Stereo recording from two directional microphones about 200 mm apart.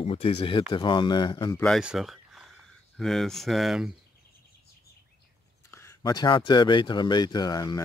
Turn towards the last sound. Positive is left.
turn(degrees=20)  # may be behind; listen again after turning